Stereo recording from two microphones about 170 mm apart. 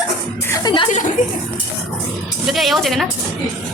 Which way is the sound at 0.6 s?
30° left (ahead or behind).